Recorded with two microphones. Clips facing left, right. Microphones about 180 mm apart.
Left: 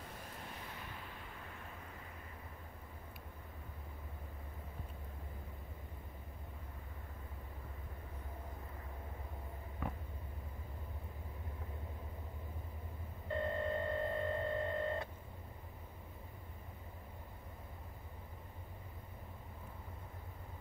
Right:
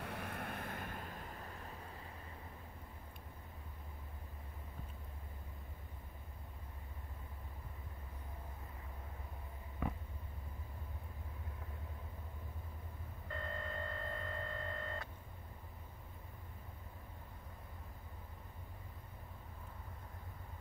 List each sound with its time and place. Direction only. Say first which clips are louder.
0.0 s waves: right 6 dB; 65° right (ahead or behind); by 1.5 s 40° right (ahead or behind)
13.3 s hum: left 8 dB; 20° left (ahead or behind)